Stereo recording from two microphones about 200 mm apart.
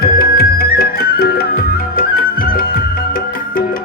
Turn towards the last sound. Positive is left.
turn(degrees=45)  # may be behind; listen again after turning